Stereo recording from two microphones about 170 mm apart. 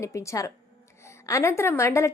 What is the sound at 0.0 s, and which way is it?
A woman's voice, 15° left (ahead or behind).